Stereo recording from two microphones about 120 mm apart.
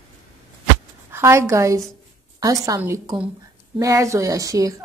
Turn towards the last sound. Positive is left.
turn(degrees=-30)  # may be behind; listen again after turning